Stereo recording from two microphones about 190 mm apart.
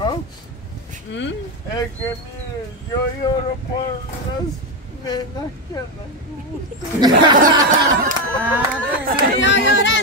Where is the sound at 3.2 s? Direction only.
20° left (ahead or behind).